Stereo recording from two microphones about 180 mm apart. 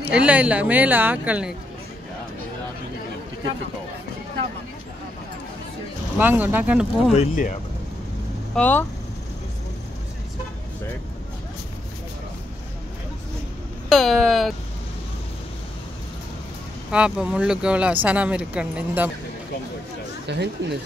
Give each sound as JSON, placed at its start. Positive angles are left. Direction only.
{"t": 0.0, "sound": "speech", "side_deg": -5}
{"t": 6.1, "sound": "speech", "side_deg": -10}
{"t": 7.2, "sound": "speech", "side_deg": 50}
{"t": 8.5, "sound": "speech", "side_deg": 10}
{"t": 13.8, "sound": "speech", "side_deg": 0}
{"t": 16.9, "sound": "speech", "side_deg": -5}
{"t": 20.3, "sound": "speech", "side_deg": -70}